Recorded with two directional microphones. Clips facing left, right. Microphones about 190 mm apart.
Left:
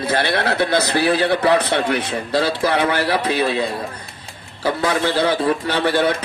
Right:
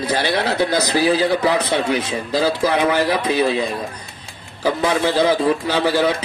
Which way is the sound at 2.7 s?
10° right (ahead or behind).